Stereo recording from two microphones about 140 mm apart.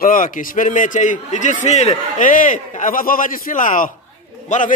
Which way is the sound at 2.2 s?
70° left (ahead or behind).